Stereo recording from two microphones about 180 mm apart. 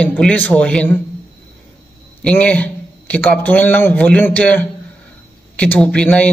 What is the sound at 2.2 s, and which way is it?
A man's voice, 5° left (ahead or behind).